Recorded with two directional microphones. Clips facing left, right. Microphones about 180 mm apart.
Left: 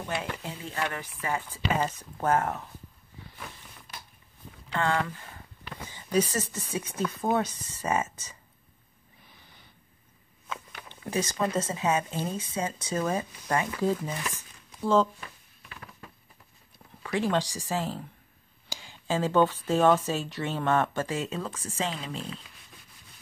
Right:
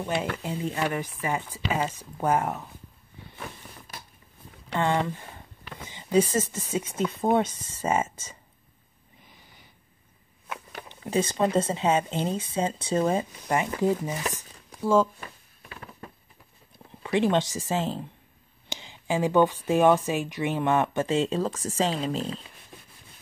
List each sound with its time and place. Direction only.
0.4 s speech: 20° right (ahead or behind)
4.7 s speech: 20° right (ahead or behind)
10.9 s speech: 25° right (ahead or behind)
14.2 s crumpling: 40° right (ahead or behind)
14.8 s speech: 10° right (ahead or behind)
15.1 s a sound: 35° right (ahead or behind)
17.0 s speech: 20° right (ahead or behind)